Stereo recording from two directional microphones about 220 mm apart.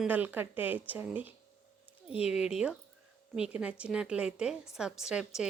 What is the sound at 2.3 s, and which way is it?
A woman's voice, 5° right (ahead or behind).